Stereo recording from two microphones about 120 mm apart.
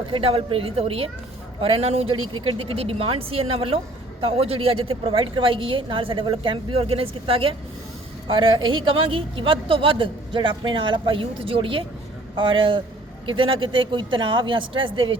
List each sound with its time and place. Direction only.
0.1 s a woman's voice: 50° right (ahead or behind)